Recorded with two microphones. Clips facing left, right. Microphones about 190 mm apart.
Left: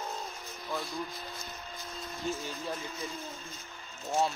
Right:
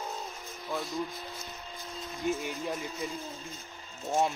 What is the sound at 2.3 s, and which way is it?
Speech, 15° right (ahead or behind).